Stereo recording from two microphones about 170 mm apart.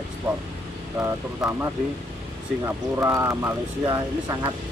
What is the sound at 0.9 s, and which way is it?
Speech, 15° right (ahead or behind).